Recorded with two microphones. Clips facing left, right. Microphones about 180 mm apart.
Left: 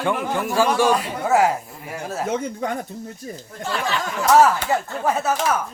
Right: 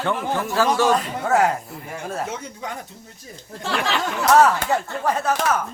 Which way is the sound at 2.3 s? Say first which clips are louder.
Left 7 dB; 55° left (ahead or behind).